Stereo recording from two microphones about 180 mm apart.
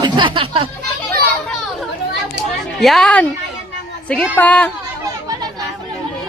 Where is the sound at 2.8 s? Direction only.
Centre (ahead or behind).